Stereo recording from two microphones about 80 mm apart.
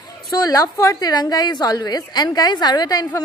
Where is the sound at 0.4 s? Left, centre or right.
Left.